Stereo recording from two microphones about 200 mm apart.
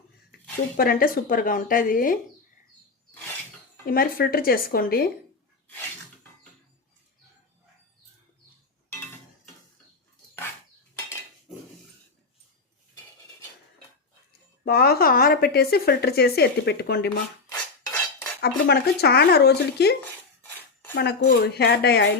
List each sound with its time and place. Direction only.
0.8 s speech: 45° left (ahead or behind)
3.8 s speech: 45° left (ahead or behind)
11.5 s dog: centre (ahead or behind)
14.6 s speech: 50° left (ahead or behind)
18.3 s speech: 55° left (ahead or behind)